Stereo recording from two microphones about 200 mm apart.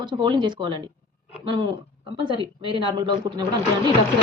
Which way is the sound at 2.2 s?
25° right (ahead or behind).